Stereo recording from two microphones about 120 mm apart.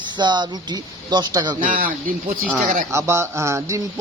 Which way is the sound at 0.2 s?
40° right (ahead or behind).